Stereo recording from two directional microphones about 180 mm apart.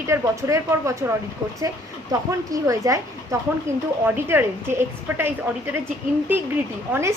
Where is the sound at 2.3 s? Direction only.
15° right (ahead or behind).